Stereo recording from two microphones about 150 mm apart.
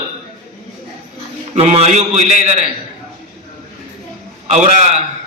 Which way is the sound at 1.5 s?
50° right (ahead or behind).